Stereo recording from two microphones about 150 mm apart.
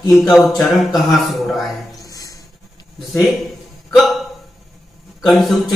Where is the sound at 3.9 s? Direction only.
Centre (ahead or behind).